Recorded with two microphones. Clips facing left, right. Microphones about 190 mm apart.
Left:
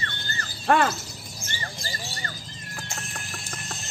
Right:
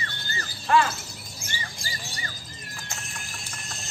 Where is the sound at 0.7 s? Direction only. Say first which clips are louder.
Left 1 dB; 60° left (ahead or behind).